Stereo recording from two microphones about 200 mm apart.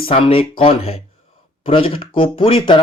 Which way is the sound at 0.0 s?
30° left (ahead or behind).